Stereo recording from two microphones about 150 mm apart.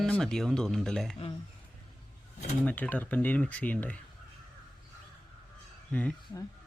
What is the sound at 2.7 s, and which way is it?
Speech, 10° left (ahead or behind).